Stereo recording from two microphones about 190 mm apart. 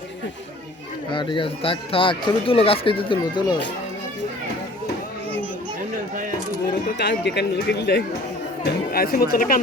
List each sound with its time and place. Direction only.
1.1 s speech: 25° left (ahead or behind)
7.0 s speech: 60° left (ahead or behind)